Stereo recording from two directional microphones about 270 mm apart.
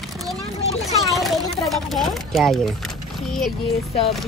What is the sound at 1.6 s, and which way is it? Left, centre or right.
Speech, centre.